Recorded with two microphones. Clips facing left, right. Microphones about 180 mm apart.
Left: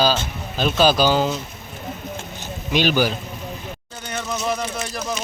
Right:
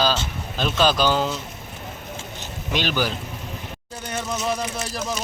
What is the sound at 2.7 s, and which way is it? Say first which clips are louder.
Speech: left 5 dB; 10° left (ahead or behind).